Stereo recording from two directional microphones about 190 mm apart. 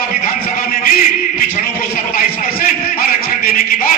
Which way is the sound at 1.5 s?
50° left (ahead or behind).